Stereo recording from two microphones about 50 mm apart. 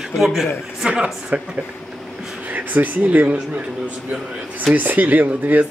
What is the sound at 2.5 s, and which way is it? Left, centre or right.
Speech, right.